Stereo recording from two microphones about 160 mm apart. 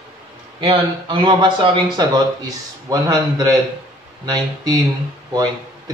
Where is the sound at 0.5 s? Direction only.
30° right (ahead or behind).